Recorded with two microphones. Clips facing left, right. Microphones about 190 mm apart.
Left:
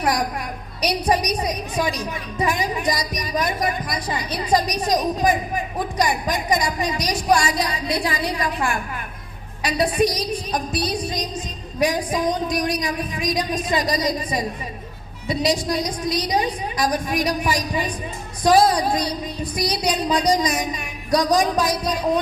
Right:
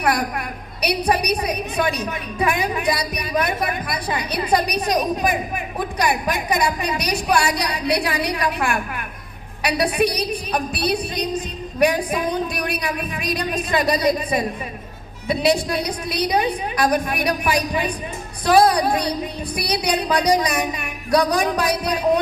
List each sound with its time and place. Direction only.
0.0 s a woman's voice: 60° right (ahead or behind)